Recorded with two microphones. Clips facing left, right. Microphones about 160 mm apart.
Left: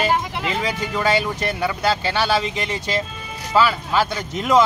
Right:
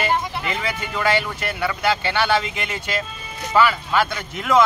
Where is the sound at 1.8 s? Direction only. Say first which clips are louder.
Right 1 dB; 35° left (ahead or behind).